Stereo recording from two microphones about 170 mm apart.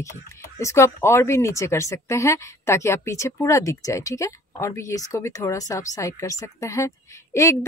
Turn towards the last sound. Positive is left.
turn(degrees=15)  # may be behind; listen again after turning